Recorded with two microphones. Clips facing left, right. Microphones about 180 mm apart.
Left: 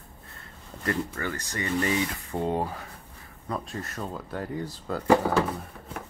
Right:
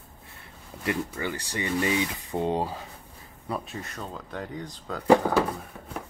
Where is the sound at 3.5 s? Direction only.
5° right (ahead or behind).